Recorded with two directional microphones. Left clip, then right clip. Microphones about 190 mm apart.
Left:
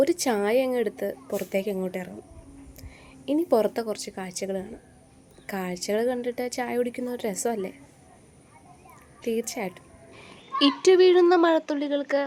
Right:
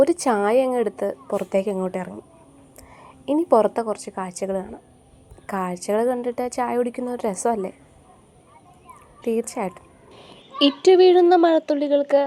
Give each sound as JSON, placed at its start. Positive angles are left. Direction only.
{"t": 0.0, "sound": "a woman's voice", "side_deg": 10}
{"t": 3.3, "sound": "a woman's voice", "side_deg": 15}
{"t": 9.6, "sound": "a woman's voice", "side_deg": 0}
{"t": 10.2, "sound": "speech", "side_deg": -10}